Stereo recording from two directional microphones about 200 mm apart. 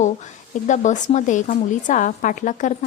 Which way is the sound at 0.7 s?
35° left (ahead or behind).